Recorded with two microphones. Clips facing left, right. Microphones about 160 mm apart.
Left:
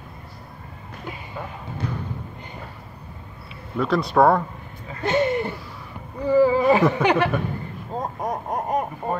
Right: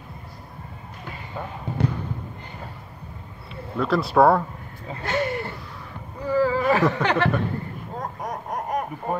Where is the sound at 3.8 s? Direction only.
Centre (ahead or behind).